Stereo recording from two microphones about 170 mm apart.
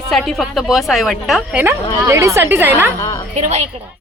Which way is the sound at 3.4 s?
40° right (ahead or behind).